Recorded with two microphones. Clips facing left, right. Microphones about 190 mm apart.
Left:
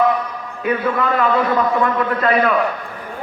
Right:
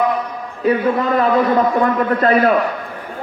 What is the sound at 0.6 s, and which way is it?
A man's voice, 35° right (ahead or behind).